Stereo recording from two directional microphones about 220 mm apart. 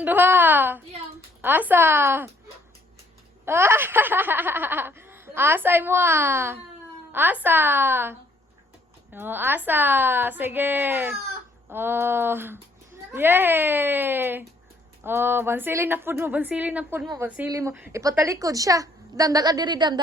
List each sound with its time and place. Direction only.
0.0 s speech: 10° right (ahead or behind)
3.4 s speech: 10° right (ahead or behind)
9.1 s speech: 10° right (ahead or behind)